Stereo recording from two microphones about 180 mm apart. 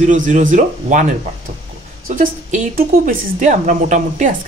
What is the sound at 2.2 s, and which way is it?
Speech, 50° right (ahead or behind).